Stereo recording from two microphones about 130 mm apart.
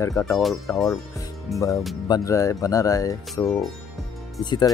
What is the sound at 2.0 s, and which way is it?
Speech, 25° left (ahead or behind).